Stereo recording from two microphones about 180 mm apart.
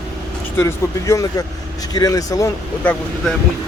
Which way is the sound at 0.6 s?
15° left (ahead or behind).